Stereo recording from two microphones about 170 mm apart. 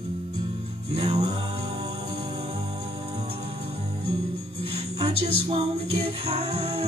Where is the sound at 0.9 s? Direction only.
40° right (ahead or behind).